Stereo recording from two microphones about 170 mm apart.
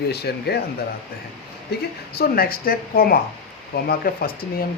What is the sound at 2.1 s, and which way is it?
Speech, 65° left (ahead or behind).